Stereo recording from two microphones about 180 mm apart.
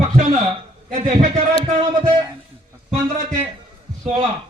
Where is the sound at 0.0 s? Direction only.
40° right (ahead or behind).